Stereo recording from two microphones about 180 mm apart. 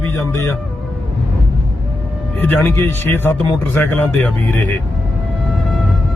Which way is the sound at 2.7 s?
15° left (ahead or behind).